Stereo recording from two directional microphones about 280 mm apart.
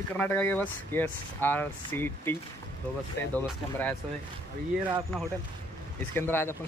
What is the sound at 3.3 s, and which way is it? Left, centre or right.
Speech, centre.